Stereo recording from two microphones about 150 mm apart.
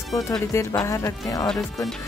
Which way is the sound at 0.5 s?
20° left (ahead or behind).